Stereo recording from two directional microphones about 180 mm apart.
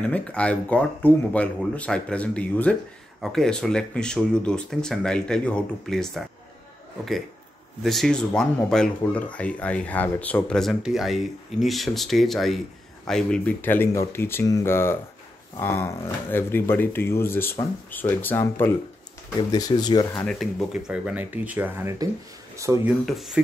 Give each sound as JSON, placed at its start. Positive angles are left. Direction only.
{"t": 0.1, "sound": "speech", "side_deg": 5}
{"t": 7.8, "sound": "speech", "side_deg": 0}
{"t": 20.2, "sound": "speech", "side_deg": 0}
{"t": 23.0, "sound": "speech", "side_deg": 0}